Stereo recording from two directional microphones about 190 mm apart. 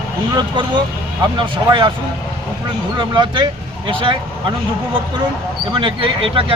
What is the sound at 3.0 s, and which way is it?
Speech, 25° right (ahead or behind).